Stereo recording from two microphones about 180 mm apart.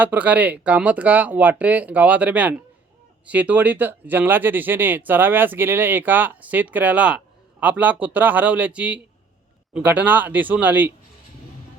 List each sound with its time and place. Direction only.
0.0 s speech: 10° right (ahead or behind)